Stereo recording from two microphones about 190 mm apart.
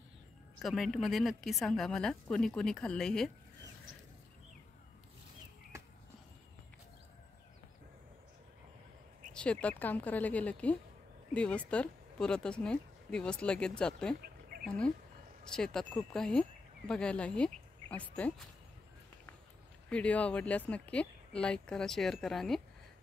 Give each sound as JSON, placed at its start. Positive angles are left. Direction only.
{"t": 0.6, "sound": "speech", "side_deg": 0}
{"t": 9.3, "sound": "speech", "side_deg": 5}
{"t": 14.5, "sound": "a sound", "side_deg": -50}
{"t": 15.5, "sound": "speech", "side_deg": 5}
{"t": 19.9, "sound": "speech", "side_deg": 5}